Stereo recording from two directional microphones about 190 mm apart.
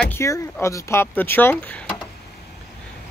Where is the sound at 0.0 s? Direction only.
15° left (ahead or behind).